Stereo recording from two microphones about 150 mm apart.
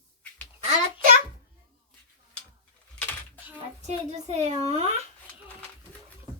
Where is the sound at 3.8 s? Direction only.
45° right (ahead or behind).